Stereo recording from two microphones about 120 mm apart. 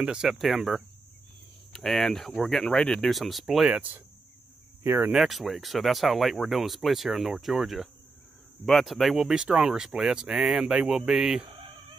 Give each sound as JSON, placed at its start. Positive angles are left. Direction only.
{"t": 0.0, "sound": "speech", "side_deg": -5}
{"t": 5.1, "sound": "speech", "side_deg": 0}